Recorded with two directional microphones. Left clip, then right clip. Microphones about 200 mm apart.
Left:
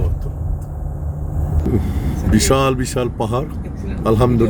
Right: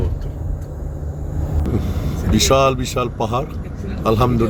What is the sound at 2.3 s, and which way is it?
A man's voice, 25° left (ahead or behind).